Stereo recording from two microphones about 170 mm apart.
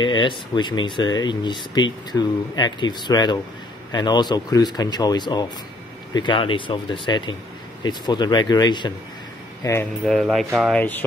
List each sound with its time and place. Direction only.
0.0 s speech: 30° left (ahead or behind)
10.0 s speech: centre (ahead or behind)
10.8 s speech: 10° left (ahead or behind)